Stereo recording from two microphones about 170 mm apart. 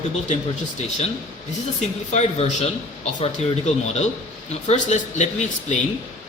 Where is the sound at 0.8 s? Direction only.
40° left (ahead or behind).